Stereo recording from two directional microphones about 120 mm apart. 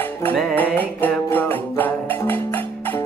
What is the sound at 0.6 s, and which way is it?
Music, 15° left (ahead or behind).